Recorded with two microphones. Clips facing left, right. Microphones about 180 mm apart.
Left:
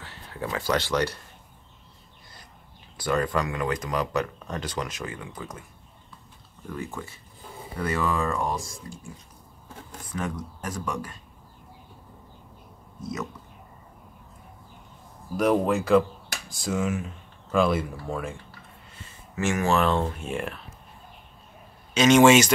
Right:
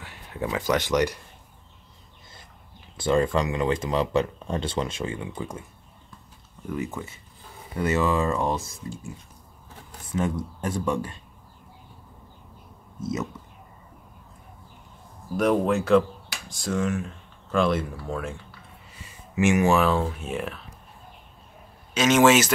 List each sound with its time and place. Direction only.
0.0 s speech: 15° right (ahead or behind)
3.0 s speech: 25° right (ahead or behind)
7.8 s speech: 25° right (ahead or behind)
10.1 s speech: 25° right (ahead or behind)
15.3 s speech: centre (ahead or behind)
19.3 s speech: 15° right (ahead or behind)
19.8 s speech: 5° right (ahead or behind)
21.9 s speech: 5° right (ahead or behind)